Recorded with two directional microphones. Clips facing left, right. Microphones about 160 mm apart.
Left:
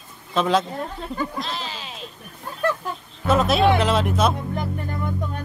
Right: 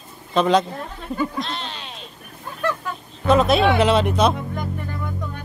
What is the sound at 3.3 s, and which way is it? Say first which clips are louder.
Speech: right 2 dB; centre (ahead or behind).